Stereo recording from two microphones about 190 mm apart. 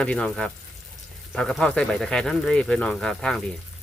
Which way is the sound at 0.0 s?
5° left (ahead or behind).